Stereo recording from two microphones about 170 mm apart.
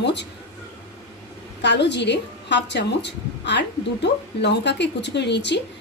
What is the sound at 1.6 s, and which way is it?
A woman's voice, 90° left.